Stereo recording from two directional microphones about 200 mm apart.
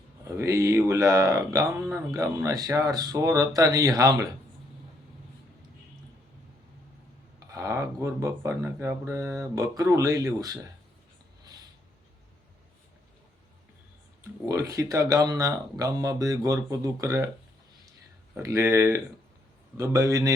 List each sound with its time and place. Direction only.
0.3 s speech: 15° right (ahead or behind)
7.3 s speech: 15° right (ahead or behind)
14.4 s speech: 15° right (ahead or behind)
18.3 s speech: 10° right (ahead or behind)